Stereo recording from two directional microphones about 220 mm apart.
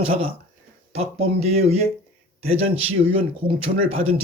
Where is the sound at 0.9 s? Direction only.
30° right (ahead or behind).